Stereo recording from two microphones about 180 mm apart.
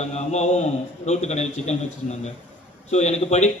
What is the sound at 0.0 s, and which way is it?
A man's voice, 40° left (ahead or behind).